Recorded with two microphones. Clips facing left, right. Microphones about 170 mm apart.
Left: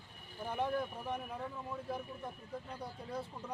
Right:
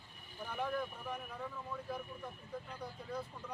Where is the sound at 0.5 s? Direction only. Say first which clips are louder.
Left 3 dB; 30° left (ahead or behind).